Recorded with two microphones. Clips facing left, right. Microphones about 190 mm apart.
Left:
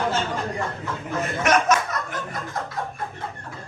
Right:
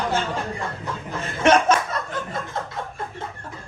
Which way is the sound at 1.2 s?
30° right (ahead or behind).